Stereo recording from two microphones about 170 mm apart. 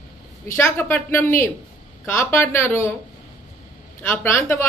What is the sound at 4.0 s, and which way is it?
Speech, 15° left (ahead or behind).